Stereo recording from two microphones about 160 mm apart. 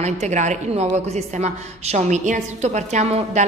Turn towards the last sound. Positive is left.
turn(degrees=-45)  # may be behind; listen again after turning